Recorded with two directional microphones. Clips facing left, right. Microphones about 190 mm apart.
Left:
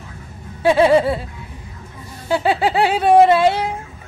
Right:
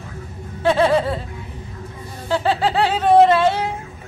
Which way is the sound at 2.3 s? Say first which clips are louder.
Left 2 dB; 10° left (ahead or behind).